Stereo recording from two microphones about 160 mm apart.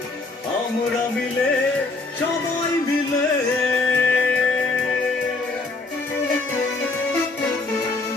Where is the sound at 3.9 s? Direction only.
10° left (ahead or behind).